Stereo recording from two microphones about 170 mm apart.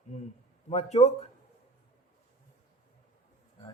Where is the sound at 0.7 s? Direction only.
35° left (ahead or behind).